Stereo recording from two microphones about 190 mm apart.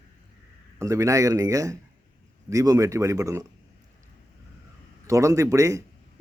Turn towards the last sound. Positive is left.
turn(degrees=-15)  # may be behind; listen again after turning